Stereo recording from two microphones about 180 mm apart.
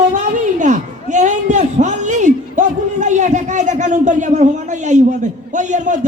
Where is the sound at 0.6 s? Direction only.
40° right (ahead or behind).